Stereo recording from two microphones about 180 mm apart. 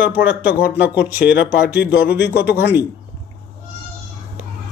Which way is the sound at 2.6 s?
10° right (ahead or behind).